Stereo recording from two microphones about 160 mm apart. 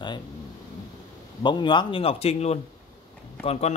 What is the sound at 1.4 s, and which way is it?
A man's voice, 30° left (ahead or behind).